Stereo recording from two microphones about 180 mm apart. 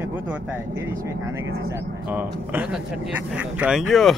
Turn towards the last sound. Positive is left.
turn(degrees=0)  # may be behind; listen again after turning